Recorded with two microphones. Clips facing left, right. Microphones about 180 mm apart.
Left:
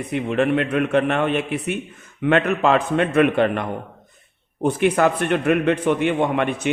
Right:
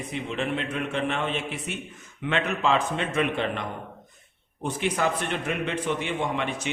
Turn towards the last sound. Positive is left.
turn(degrees=55)  # may be behind; listen again after turning